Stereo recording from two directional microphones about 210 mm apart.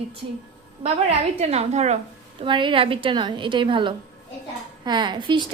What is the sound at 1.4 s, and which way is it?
A woman's voice, 30° right (ahead or behind).